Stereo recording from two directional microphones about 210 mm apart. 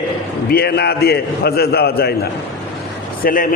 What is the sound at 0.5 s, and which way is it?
A man's voice, 50° left (ahead or behind).